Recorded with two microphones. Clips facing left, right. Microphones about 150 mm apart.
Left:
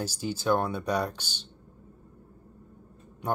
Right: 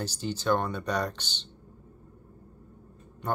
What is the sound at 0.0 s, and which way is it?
Speech, 10° left (ahead or behind).